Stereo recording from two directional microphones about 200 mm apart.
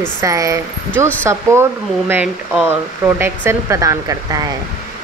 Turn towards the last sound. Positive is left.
turn(degrees=-15)  # may be behind; listen again after turning